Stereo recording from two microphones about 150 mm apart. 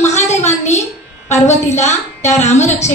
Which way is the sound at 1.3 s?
50° left (ahead or behind).